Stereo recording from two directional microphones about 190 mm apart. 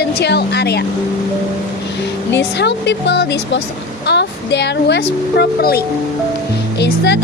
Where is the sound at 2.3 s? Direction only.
65° left (ahead or behind).